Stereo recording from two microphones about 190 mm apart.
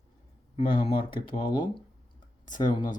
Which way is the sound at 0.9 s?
25° left (ahead or behind).